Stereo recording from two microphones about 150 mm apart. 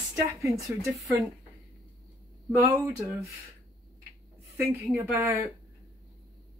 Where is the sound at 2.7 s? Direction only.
15° right (ahead or behind).